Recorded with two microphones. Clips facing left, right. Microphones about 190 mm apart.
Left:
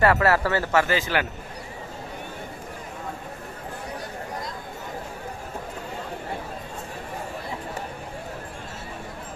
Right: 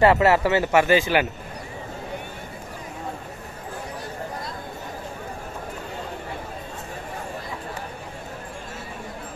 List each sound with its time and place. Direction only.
0.0 s speech: 20° right (ahead or behind)